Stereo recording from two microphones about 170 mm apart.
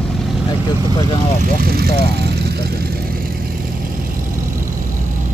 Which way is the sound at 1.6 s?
65° right (ahead or behind).